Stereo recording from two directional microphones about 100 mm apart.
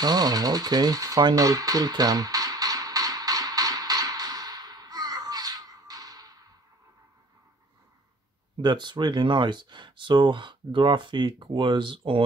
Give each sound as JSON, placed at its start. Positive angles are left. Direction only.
{"t": 0.0, "sound": "tools", "side_deg": -40}
{"t": 8.5, "sound": "speech", "side_deg": -50}